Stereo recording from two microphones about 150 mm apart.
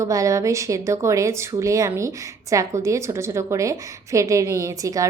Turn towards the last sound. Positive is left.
turn(degrees=-20)  # may be behind; listen again after turning